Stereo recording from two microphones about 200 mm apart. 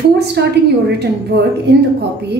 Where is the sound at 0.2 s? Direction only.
55° right (ahead or behind).